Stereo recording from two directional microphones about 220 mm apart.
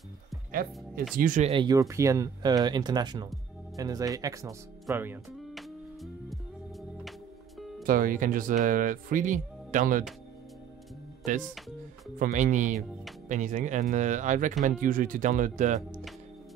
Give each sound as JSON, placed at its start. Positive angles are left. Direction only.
{"t": 0.5, "sound": "speech", "side_deg": -40}
{"t": 3.7, "sound": "music", "side_deg": -15}
{"t": 7.8, "sound": "speech", "side_deg": -40}
{"t": 12.2, "sound": "speech", "side_deg": -35}